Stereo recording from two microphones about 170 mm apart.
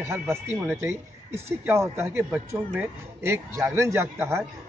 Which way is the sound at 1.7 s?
15° right (ahead or behind).